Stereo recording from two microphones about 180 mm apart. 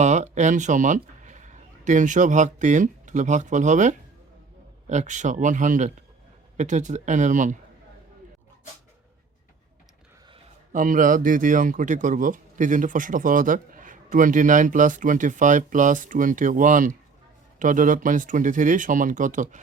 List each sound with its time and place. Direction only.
0.0 s speech: 40° right (ahead or behind)
10.7 s speech: 45° right (ahead or behind)